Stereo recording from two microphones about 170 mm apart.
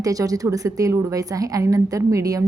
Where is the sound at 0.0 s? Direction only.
20° right (ahead or behind).